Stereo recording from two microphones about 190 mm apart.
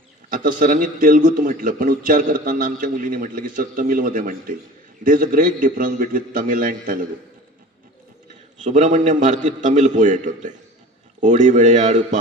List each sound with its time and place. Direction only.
0.3 s a man's voice: 45° right (ahead or behind)
8.6 s a man's voice: 35° right (ahead or behind)